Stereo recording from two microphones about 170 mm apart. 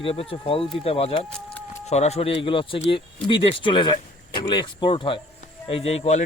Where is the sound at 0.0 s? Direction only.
35° left (ahead or behind).